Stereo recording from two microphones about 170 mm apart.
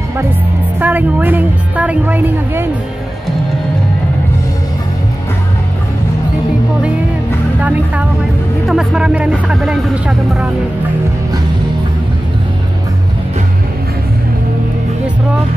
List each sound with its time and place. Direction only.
0.7 s a woman's voice: 10° right (ahead or behind)
7.6 s a woman's voice: 10° right (ahead or behind)